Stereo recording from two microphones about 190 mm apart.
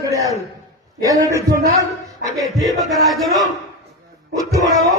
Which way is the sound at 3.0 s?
Centre (ahead or behind).